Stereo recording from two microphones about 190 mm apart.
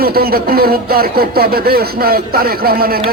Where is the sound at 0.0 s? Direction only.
55° right (ahead or behind).